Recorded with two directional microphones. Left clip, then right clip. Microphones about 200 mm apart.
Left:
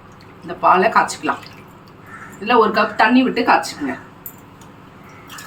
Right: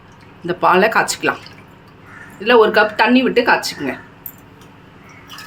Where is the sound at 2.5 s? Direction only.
55° right (ahead or behind).